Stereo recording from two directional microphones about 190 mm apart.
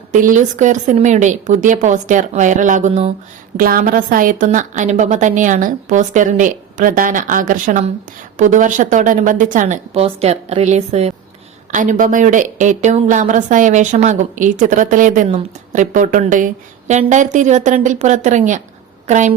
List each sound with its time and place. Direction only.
0.1 s speech: 40° right (ahead or behind)
3.6 s a woman's voice: 50° right (ahead or behind)